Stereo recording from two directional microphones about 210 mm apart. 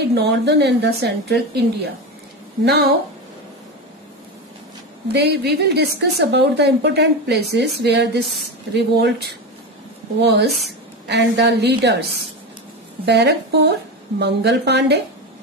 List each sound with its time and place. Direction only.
0.0 s a woman's voice: 50° right (ahead or behind)
5.1 s a woman's voice: 50° right (ahead or behind)